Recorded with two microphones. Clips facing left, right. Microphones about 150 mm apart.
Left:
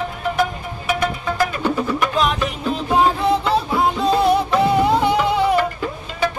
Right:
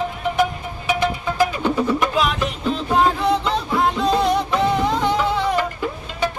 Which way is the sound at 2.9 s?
5° left (ahead or behind).